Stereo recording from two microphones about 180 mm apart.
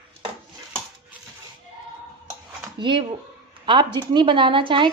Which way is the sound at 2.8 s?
25° right (ahead or behind).